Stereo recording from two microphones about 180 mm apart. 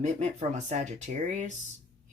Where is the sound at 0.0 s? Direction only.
40° right (ahead or behind).